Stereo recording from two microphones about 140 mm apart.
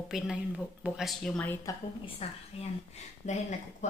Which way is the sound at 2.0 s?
40° left (ahead or behind).